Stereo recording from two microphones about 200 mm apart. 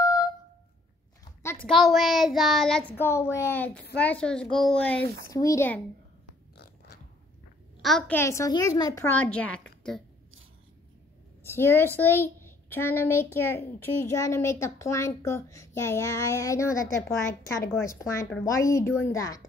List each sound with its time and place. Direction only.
0.0 s a sound: 20° left (ahead or behind)
1.4 s a sound: 10° left (ahead or behind)
1.7 s child singing: centre (ahead or behind)
3.9 s a child's voice: 5° left (ahead or behind)
7.8 s a child's voice: centre (ahead or behind)
8.2 s a child's voice: 15° left (ahead or behind)
11.4 s a woman's voice: 10° left (ahead or behind)